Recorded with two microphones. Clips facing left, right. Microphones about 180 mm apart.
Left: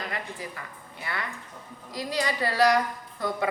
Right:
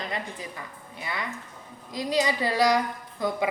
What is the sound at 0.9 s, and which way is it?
A woman's voice, 15° right (ahead or behind).